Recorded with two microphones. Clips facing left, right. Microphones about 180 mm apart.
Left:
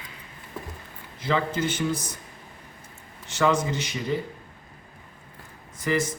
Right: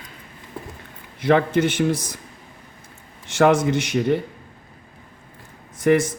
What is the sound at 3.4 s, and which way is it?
Speech, 80° right.